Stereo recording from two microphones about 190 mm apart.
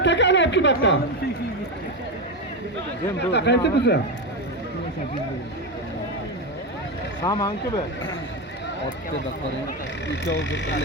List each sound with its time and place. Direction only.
0.0 s a sound: 70° left (ahead or behind)
3.2 s speech: 65° left (ahead or behind)
7.3 s speech: 20° left (ahead or behind)
10.1 s speech: 70° left (ahead or behind)